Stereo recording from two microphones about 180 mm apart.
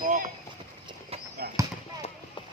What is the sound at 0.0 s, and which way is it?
Vehicle, 45° right (ahead or behind).